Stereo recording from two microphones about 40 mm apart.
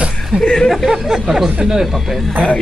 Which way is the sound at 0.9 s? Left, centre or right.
Centre.